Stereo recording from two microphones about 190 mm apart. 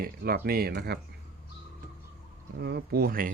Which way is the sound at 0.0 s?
50° right (ahead or behind).